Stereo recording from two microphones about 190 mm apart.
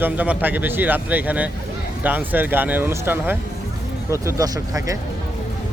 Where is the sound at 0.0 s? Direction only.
10° right (ahead or behind).